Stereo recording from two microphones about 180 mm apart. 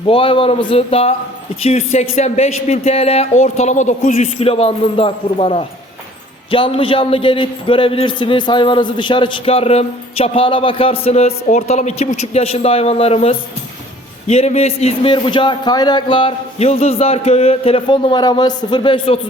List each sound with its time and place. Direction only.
0.1 s a man's voice: 30° left (ahead or behind)